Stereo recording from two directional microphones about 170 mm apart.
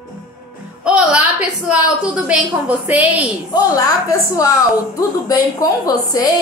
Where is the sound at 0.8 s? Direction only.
5° right (ahead or behind).